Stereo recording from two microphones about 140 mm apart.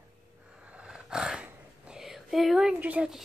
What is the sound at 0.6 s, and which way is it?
Speech, 10° right (ahead or behind).